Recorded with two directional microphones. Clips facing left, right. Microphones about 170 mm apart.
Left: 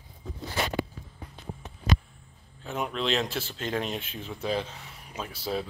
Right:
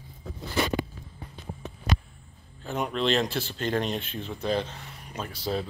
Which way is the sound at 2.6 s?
Centre (ahead or behind).